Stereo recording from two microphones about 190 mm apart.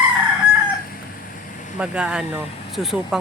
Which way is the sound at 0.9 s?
45° left (ahead or behind).